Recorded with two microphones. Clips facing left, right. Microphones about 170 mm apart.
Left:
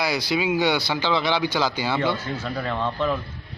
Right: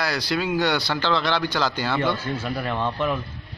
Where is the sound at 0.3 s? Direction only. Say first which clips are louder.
Left 1 dB; 10° left (ahead or behind).